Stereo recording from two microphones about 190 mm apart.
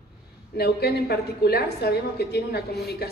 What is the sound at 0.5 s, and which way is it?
A woman's voice, 55° left (ahead or behind).